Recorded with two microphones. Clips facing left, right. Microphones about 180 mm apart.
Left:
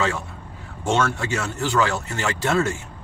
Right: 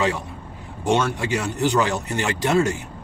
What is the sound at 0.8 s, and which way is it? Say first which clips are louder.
Speech: right 1 dB; 15° right (ahead or behind).